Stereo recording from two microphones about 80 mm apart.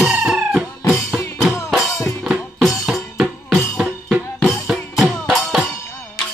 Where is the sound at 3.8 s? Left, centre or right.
Centre.